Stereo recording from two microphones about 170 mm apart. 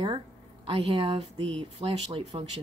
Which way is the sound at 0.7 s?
35° right (ahead or behind).